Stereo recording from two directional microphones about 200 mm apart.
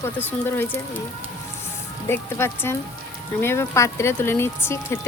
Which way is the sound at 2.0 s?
10° left (ahead or behind).